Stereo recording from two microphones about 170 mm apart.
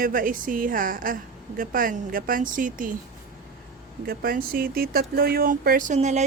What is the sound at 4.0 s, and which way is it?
Speech, 65° right (ahead or behind).